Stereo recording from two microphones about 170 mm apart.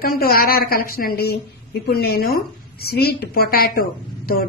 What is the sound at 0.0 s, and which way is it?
A woman's voice, 60° left (ahead or behind).